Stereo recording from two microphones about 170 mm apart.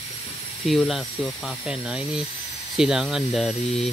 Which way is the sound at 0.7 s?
Centre (ahead or behind).